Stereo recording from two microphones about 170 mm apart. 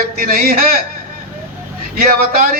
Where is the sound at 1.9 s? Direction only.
60° right (ahead or behind).